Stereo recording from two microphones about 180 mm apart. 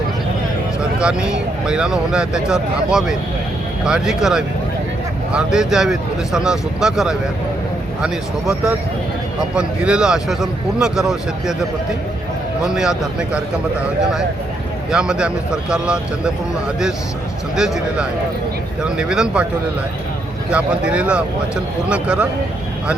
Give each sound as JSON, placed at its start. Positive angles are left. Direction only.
{"t": 0.9, "sound": "speech", "side_deg": -5}
{"t": 12.6, "sound": "speech", "side_deg": 0}
{"t": 17.5, "sound": "speech", "side_deg": -5}
{"t": 20.5, "sound": "speech", "side_deg": -5}